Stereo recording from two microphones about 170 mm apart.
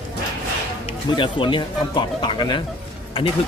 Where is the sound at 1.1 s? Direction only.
30° left (ahead or behind).